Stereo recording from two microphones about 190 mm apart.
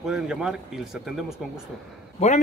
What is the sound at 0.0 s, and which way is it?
Speech, 5° right (ahead or behind).